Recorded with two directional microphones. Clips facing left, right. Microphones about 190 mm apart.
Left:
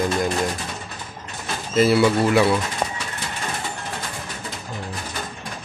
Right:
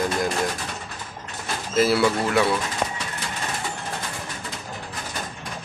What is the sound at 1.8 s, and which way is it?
Speech, centre (ahead or behind).